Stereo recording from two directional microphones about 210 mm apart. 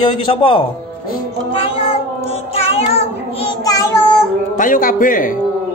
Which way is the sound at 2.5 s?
30° left (ahead or behind).